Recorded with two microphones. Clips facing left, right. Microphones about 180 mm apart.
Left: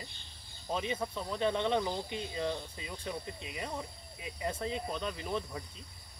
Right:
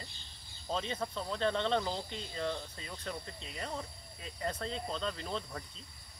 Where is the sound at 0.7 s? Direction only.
10° left (ahead or behind).